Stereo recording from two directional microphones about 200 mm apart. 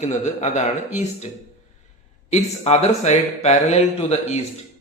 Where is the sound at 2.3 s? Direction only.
35° left (ahead or behind).